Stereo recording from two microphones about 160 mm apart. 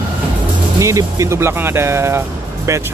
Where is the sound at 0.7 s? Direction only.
20° right (ahead or behind).